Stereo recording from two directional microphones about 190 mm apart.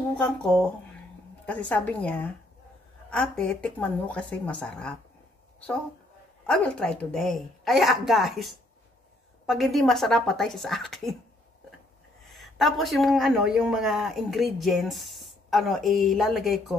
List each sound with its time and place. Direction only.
0.2 s a woman's voice: 5° left (ahead or behind)
6.4 s speech: 5° left (ahead or behind)
12.3 s speech: centre (ahead or behind)